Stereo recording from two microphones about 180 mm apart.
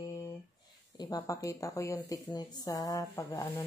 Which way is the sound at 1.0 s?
20° left (ahead or behind).